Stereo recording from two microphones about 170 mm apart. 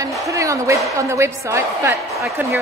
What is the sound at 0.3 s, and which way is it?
A woman's voice, 20° right (ahead or behind).